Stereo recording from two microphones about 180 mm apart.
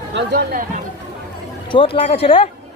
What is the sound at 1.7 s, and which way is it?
Speech, 30° left (ahead or behind).